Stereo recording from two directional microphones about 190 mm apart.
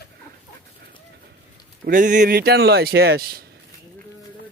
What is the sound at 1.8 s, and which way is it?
Speech, 45° right (ahead or behind).